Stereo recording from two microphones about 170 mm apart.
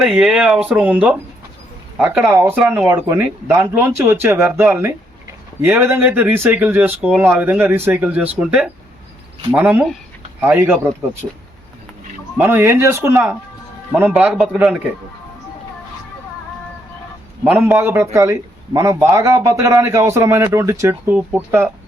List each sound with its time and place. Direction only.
0.0 s speech: 5° right (ahead or behind)
12.4 s speech: 15° right (ahead or behind)
17.4 s speech: 10° right (ahead or behind)